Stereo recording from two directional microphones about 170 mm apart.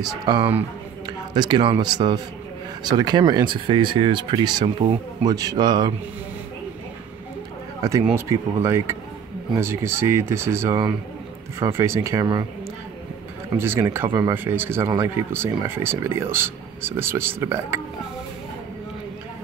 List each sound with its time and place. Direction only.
0.2 s a man's voice: 25° right (ahead or behind)
7.8 s speech: 20° right (ahead or behind)
13.6 s speech: 15° right (ahead or behind)